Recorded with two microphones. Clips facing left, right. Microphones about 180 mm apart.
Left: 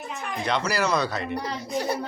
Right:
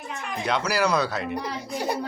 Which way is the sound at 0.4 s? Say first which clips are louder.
Right 1 dB; 5° right (ahead or behind).